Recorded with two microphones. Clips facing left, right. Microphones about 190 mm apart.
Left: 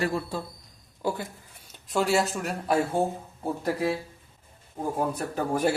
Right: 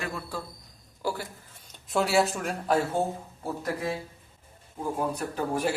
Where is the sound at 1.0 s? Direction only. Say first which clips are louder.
Left 2 dB; 20° left (ahead or behind).